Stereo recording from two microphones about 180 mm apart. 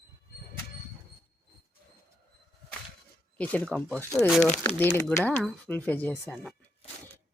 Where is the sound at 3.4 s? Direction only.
10° left (ahead or behind).